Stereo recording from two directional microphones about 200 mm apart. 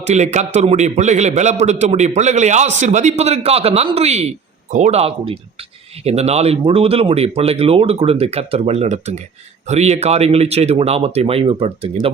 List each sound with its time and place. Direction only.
0.0 s a man's voice: 35° right (ahead or behind)